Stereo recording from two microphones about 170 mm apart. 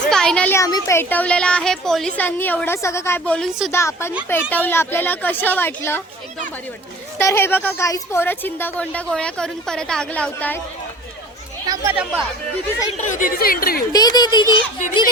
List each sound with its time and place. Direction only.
0.1 s a sound: 5° left (ahead or behind)
0.5 s a woman's voice: 20° left (ahead or behind)
3.7 s a woman's voice: 15° left (ahead or behind)
7.2 s a woman's voice: 15° left (ahead or behind)
11.6 s speech: 20° right (ahead or behind)
12.9 s speech: 45° left (ahead or behind)
13.9 s speech: 25° left (ahead or behind)